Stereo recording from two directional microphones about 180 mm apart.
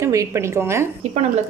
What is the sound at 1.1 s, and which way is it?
Speech, 40° right (ahead or behind).